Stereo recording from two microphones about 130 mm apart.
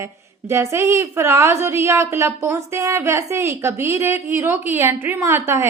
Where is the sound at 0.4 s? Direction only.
20° right (ahead or behind).